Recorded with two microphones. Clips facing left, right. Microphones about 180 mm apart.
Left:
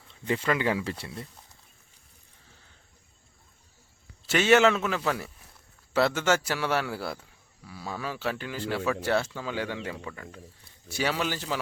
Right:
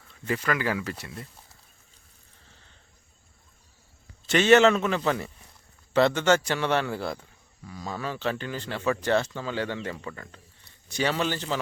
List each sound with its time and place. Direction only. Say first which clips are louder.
0.3 s speech: left 1 dB; 25° left (ahead or behind)
4.3 s a man's voice: right 3 dB; 10° left (ahead or behind)